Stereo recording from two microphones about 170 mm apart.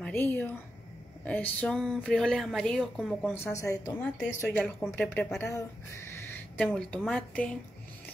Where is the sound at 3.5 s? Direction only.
20° left (ahead or behind).